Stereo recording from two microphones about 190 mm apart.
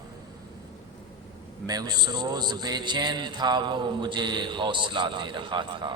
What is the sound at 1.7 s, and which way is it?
Mantra, 20° right (ahead or behind).